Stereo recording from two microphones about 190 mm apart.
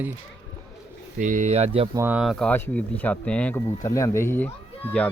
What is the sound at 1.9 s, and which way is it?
Speech, 10° right (ahead or behind).